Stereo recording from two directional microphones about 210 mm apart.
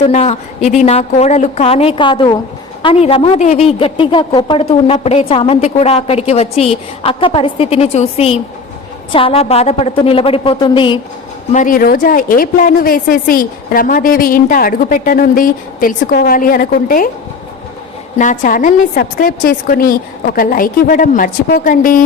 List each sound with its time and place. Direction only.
0.0 s a woman's voice: 30° left (ahead or behind)
11.5 s a woman's voice: 40° left (ahead or behind)
18.2 s a woman's voice: 40° left (ahead or behind)